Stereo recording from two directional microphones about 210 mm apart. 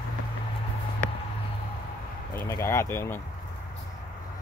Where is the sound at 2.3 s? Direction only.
15° left (ahead or behind).